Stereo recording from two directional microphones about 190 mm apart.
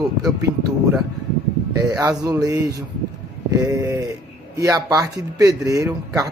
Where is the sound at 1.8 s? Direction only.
20° right (ahead or behind).